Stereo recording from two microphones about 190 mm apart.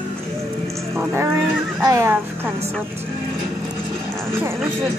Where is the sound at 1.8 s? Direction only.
15° right (ahead or behind).